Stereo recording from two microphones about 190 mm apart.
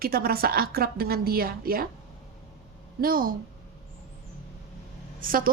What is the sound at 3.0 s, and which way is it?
Speech, 50° right (ahead or behind).